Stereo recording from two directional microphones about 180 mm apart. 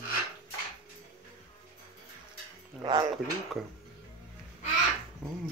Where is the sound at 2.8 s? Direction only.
25° right (ahead or behind).